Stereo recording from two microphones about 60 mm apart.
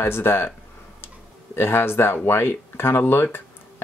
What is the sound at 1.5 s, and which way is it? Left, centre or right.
Speech, left.